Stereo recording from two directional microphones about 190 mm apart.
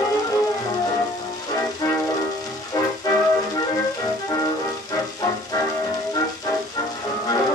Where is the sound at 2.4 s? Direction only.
20° left (ahead or behind).